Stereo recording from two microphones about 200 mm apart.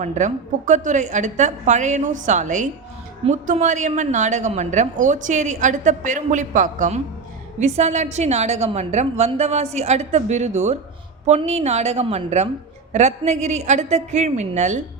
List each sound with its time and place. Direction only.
0.0 s a woman's voice: 35° right (ahead or behind)